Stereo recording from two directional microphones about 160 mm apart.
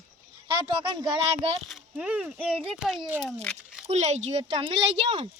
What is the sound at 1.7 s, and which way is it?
Speech, 5° right (ahead or behind).